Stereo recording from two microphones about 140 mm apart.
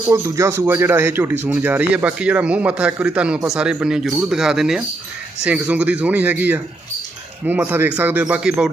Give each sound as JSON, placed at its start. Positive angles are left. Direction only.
{"t": 0.1, "sound": "speech", "side_deg": -20}